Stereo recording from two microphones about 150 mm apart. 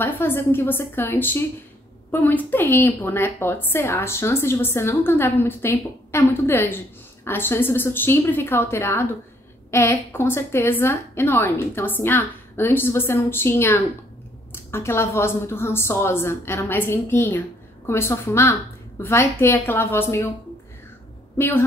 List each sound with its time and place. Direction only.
0.0 s a woman's voice: 15° left (ahead or behind)
21.4 s a woman's voice: 15° left (ahead or behind)